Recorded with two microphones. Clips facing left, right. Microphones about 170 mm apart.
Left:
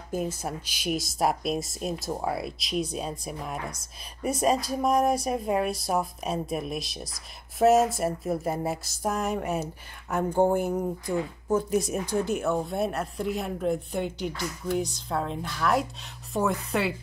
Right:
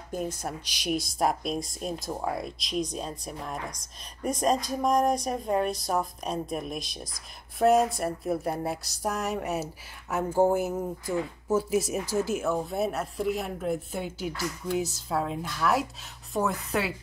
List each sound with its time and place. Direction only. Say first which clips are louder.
0.1 s speech: left 2 dB; 5° left (ahead or behind)